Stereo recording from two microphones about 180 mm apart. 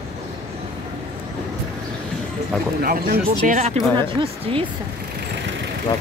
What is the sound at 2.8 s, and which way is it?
Speech, 55° right (ahead or behind).